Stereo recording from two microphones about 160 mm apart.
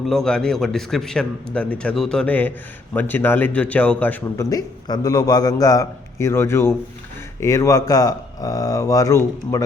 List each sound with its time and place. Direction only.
0.0 s a man's voice: centre (ahead or behind)
4.4 s a man's voice: 20° left (ahead or behind)